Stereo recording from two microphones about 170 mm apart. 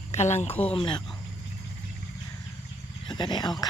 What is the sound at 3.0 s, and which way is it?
Speech, 25° left (ahead or behind).